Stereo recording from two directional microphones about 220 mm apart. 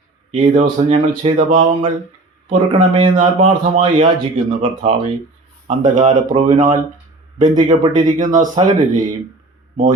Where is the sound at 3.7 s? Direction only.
30° right (ahead or behind).